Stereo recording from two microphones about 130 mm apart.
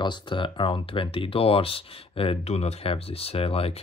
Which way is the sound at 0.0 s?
35° left (ahead or behind).